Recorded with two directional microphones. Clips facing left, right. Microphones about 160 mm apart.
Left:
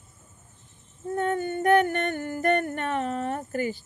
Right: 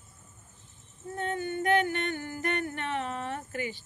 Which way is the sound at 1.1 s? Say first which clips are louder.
Left 6 dB; 50° left (ahead or behind).